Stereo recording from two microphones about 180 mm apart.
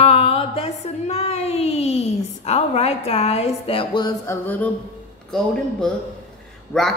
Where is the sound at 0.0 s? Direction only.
35° left (ahead or behind).